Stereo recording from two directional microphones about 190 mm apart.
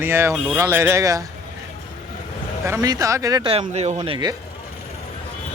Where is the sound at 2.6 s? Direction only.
15° right (ahead or behind).